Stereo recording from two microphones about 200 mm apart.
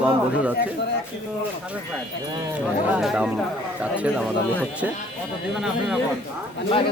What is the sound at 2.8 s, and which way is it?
Speech, 5° right (ahead or behind).